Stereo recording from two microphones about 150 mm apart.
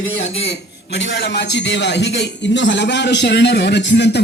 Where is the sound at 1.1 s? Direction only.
90° left.